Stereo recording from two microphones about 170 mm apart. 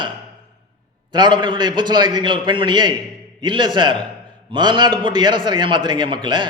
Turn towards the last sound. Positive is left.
turn(degrees=-25)  # may be behind; listen again after turning